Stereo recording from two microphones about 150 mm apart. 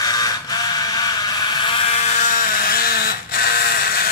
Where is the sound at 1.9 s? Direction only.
50° left (ahead or behind).